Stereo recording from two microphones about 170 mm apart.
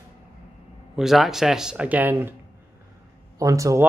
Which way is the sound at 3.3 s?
20° right (ahead or behind).